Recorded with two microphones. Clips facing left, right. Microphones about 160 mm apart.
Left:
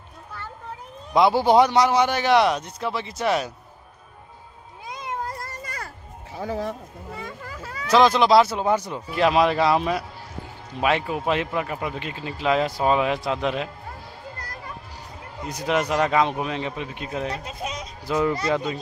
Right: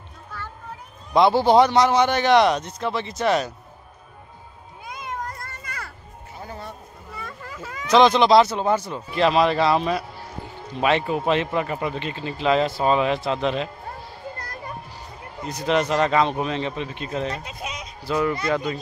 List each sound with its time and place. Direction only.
1.1 s speech: 10° left (ahead or behind)
4.8 s children playing: 30° left (ahead or behind)
6.3 s speech: 90° left
7.9 s speech: 5° left (ahead or behind)
15.4 s speech: 10° left (ahead or behind)
17.5 s a sound: 40° left (ahead or behind)
18.0 s speech: 20° left (ahead or behind)